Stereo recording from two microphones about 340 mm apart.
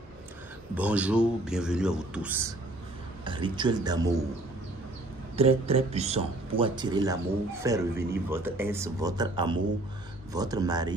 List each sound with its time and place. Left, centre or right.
0.7 s speech: centre
5.3 s speech: centre